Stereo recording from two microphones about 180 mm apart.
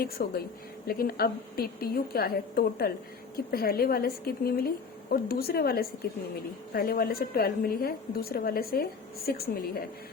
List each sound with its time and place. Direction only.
0.0 s a woman's voice: 55° left (ahead or behind)